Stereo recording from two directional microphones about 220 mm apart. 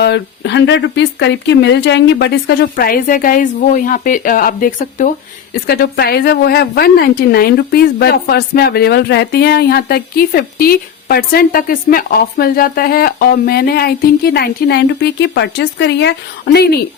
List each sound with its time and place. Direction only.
0.0 s a woman's voice: 50° left (ahead or behind); by 5.1 s 35° left (ahead or behind)
5.6 s a woman's voice: 45° left (ahead or behind)